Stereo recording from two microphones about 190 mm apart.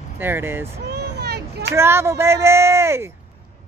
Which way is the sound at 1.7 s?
15° right (ahead or behind).